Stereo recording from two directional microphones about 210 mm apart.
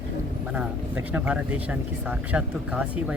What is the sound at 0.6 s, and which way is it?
Speech, 5° right (ahead or behind).